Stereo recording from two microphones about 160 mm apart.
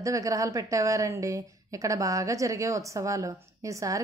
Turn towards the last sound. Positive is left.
turn(degrees=-20)  # may be behind; listen again after turning